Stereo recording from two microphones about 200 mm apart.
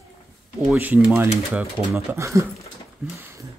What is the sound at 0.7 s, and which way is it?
Speech, 5° right (ahead or behind).